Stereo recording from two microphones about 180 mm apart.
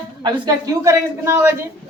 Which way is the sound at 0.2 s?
20° right (ahead or behind).